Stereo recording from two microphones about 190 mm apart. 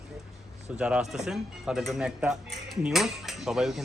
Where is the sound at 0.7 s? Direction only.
5° right (ahead or behind).